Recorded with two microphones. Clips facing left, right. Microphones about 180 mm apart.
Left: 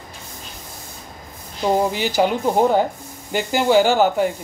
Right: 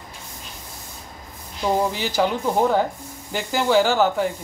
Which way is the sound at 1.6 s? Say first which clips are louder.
Left 3 dB; 20° left (ahead or behind).